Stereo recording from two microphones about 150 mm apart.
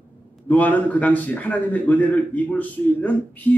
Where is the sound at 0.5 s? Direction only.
10° left (ahead or behind).